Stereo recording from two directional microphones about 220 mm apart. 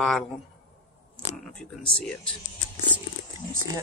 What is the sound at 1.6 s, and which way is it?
Speech, 5° left (ahead or behind).